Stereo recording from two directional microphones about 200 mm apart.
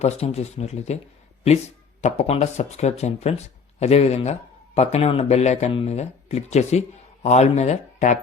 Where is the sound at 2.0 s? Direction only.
35° left (ahead or behind).